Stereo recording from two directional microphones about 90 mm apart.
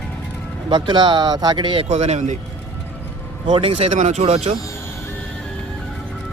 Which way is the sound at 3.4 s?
65° right (ahead or behind).